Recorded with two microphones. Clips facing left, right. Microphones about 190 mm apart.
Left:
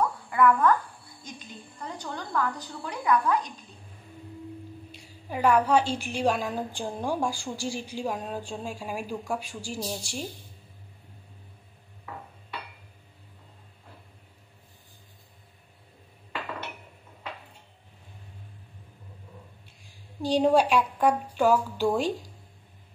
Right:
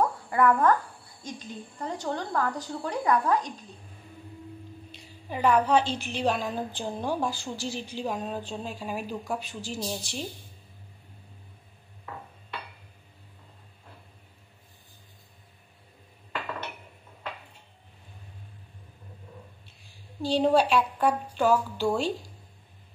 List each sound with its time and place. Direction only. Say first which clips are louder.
0.3 s a child's voice: left 1 dB; 35° right (ahead or behind)
4.9 s a woman's voice: left 1 dB; 10° left (ahead or behind)
20.2 s a woman's voice: left 1 dB; 15° left (ahead or behind)